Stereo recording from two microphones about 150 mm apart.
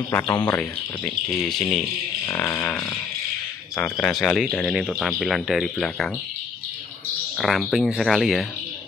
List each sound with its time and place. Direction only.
0.1 s speech: 15° left (ahead or behind)
4.0 s speech: 5° left (ahead or behind)
7.3 s speech: centre (ahead or behind)